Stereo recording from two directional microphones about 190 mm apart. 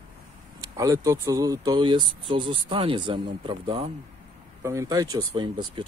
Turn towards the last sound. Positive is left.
turn(degrees=-25)  # may be behind; listen again after turning